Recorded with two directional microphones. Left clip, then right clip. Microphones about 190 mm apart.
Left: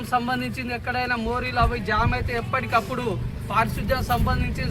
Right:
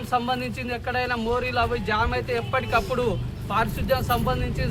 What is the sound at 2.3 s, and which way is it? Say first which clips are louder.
Speech: left 1 dB; centre (ahead or behind).